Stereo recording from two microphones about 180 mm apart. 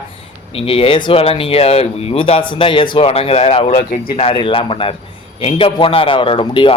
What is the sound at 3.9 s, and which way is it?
Speech, 55° left (ahead or behind).